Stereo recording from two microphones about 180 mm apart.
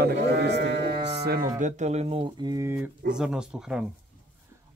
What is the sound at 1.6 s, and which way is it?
Speech, 40° right (ahead or behind).